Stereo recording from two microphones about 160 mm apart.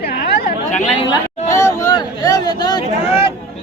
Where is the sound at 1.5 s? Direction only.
20° left (ahead or behind).